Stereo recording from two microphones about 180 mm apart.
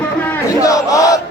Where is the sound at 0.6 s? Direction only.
20° left (ahead or behind).